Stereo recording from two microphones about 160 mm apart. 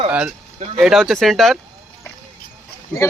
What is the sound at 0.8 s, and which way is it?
Speech, centre (ahead or behind).